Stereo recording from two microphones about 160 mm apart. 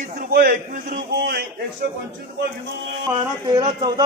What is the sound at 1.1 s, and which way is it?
Speech, 75° right (ahead or behind).